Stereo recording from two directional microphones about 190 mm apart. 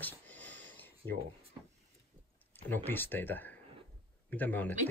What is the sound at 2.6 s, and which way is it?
Speech, 10° left (ahead or behind).